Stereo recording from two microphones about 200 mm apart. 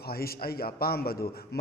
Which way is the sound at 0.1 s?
50° left (ahead or behind).